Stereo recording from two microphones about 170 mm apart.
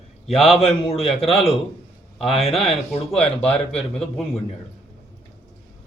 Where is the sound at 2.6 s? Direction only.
35° left (ahead or behind).